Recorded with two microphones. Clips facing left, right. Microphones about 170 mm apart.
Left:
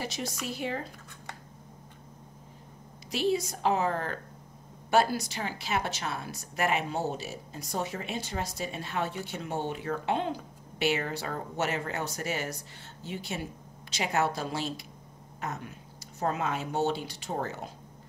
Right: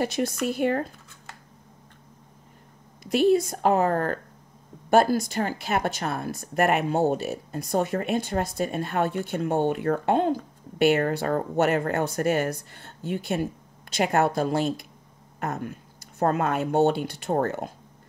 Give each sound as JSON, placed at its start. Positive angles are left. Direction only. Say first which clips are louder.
{"t": 0.0, "sound": "speech", "louder": "right 10 dB", "side_deg": -55}
{"t": 3.1, "sound": "a woman's voice", "louder": "right 8 dB", "side_deg": -55}